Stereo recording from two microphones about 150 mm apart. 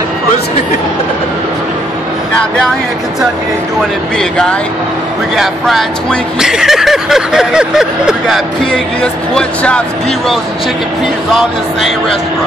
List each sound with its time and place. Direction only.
4.2 s speech: 5° left (ahead or behind)